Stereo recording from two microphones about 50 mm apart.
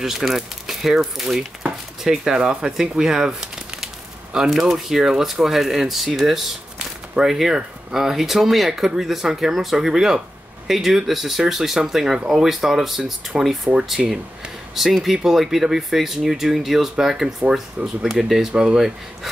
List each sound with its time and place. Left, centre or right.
0.0 s speech: centre